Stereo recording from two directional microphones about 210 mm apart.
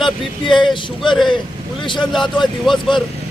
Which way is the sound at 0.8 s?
25° left (ahead or behind).